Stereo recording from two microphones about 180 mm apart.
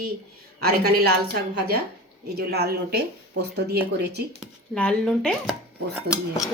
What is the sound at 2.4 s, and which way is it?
Speech, 60° right (ahead or behind).